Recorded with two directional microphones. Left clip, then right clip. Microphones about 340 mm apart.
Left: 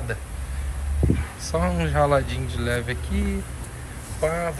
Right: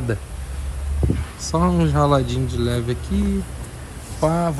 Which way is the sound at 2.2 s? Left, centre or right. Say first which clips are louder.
Right 4 dB; centre.